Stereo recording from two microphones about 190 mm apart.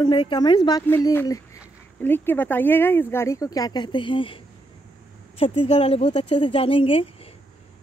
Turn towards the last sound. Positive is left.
turn(degrees=30)  # may be behind; listen again after turning